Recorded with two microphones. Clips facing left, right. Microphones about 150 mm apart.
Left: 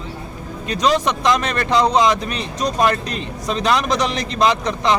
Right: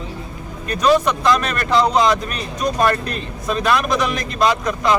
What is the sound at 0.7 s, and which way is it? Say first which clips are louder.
Speech: right 2 dB; 20° left (ahead or behind).